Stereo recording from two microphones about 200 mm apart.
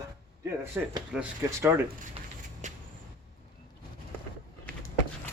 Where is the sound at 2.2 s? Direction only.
30° right (ahead or behind).